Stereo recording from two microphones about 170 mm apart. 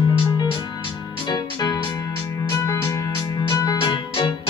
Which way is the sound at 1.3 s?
25° left (ahead or behind).